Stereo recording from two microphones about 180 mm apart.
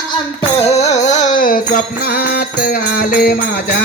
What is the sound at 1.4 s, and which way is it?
Music, 50° left (ahead or behind).